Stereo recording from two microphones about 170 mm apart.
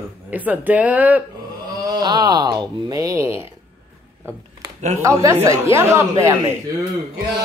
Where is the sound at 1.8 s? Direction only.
25° right (ahead or behind).